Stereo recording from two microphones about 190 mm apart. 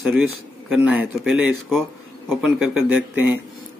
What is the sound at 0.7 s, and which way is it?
A man's voice, 5° right (ahead or behind).